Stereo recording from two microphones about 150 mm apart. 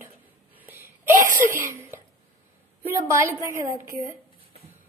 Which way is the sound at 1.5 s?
15° right (ahead or behind).